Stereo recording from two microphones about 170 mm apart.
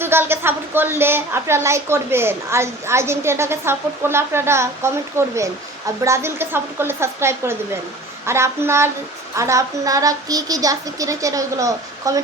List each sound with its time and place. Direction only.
0.0 s a woman's voice: 15° right (ahead or behind)
9.3 s child singing: 15° right (ahead or behind)